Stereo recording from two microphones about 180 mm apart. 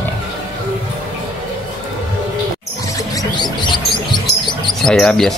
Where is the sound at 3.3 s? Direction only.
25° left (ahead or behind).